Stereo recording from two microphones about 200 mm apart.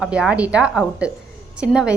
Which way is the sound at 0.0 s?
5° right (ahead or behind).